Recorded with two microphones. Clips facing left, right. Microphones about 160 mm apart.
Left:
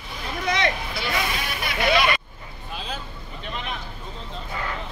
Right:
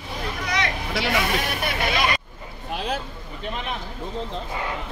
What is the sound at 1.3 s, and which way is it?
Vehicle, 50° right (ahead or behind).